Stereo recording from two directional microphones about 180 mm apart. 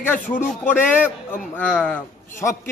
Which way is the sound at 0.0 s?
10° left (ahead or behind).